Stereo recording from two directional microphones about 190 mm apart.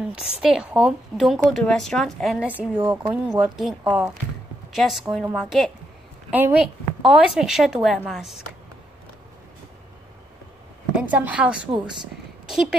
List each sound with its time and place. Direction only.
0.1 s a woman's voice: 5° right (ahead or behind)
2.8 s speech: 25° right (ahead or behind)
3.1 s a woman's voice: 5° right (ahead or behind)
11.0 s a woman's voice: 10° right (ahead or behind)